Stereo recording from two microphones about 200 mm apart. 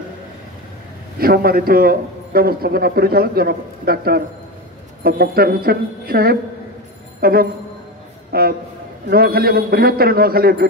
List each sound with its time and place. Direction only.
1.2 s a man's voice: 50° right (ahead or behind)